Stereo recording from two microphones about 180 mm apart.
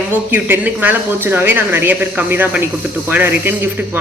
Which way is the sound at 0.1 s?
10° right (ahead or behind).